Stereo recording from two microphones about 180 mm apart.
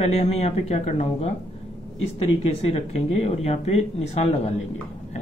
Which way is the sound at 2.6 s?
35° left (ahead or behind).